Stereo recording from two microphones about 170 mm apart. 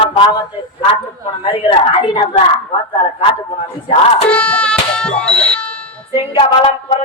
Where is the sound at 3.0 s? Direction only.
30° left (ahead or behind).